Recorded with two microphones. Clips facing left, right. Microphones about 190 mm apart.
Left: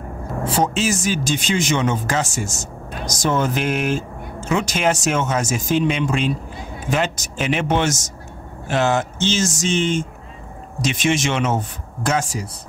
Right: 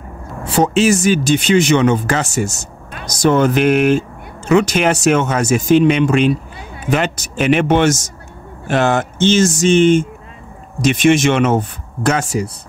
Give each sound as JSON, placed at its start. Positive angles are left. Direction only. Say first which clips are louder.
{"t": 0.5, "sound": "speech", "louder": "right 7 dB", "side_deg": -70}